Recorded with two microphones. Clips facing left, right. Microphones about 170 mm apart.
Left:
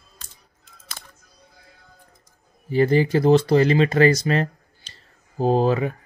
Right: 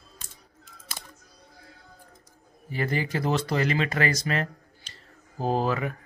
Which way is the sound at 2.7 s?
30° left (ahead or behind).